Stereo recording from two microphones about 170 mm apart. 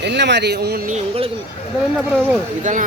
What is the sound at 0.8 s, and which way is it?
Speech, 40° right (ahead or behind).